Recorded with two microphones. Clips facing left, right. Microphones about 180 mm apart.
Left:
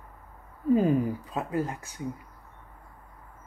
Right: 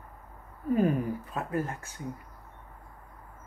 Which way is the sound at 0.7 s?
20° left (ahead or behind).